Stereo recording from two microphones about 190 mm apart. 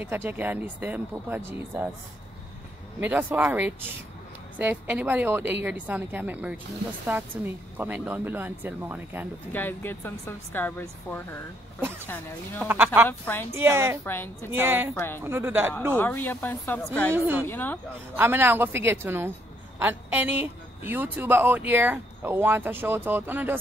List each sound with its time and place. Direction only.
0.0 s speech: 10° right (ahead or behind)
3.0 s speech: 10° right (ahead or behind)
9.5 s a woman's voice: 10° left (ahead or behind)
12.6 s speech: 10° right (ahead or behind)
13.2 s a woman's voice: 10° left (ahead or behind)
13.5 s speech: 15° right (ahead or behind)
14.0 s a woman's voice: 10° left (ahead or behind)
14.5 s speech: 10° right (ahead or behind)
15.0 s a woman's voice: 10° left (ahead or behind)
15.2 s speech: 10° right (ahead or behind)
16.0 s a woman's voice: 10° left (ahead or behind)
18.1 s speech: 10° right (ahead or behind)